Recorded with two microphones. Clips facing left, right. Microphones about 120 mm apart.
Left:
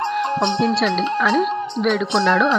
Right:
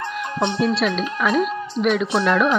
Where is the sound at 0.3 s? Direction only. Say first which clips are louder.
Right 1 dB; 25° left (ahead or behind).